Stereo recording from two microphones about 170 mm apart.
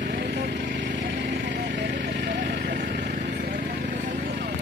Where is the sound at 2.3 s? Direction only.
85° right.